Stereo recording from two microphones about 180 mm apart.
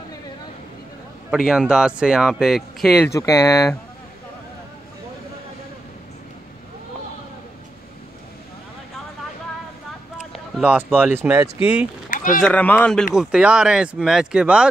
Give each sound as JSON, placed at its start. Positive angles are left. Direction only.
{"t": 1.3, "sound": "speech", "side_deg": -5}
{"t": 3.1, "sound": "speech", "side_deg": 15}
{"t": 10.3, "sound": "a sound", "side_deg": -5}
{"t": 11.0, "sound": "speech", "side_deg": -10}
{"t": 12.1, "sound": "run", "side_deg": 45}
{"t": 12.4, "sound": "speech", "side_deg": 5}
{"t": 13.1, "sound": "speech", "side_deg": -5}